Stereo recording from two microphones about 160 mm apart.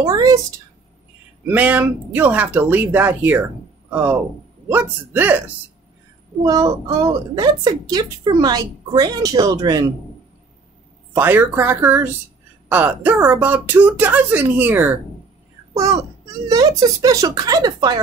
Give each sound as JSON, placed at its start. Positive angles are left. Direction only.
{"t": 0.0, "sound": "a woman's voice", "side_deg": -20}
{"t": 1.5, "sound": "speech", "side_deg": -10}
{"t": 6.4, "sound": "a woman's voice", "side_deg": -25}
{"t": 11.1, "sound": "speech", "side_deg": -15}
{"t": 15.7, "sound": "a woman's voice", "side_deg": -20}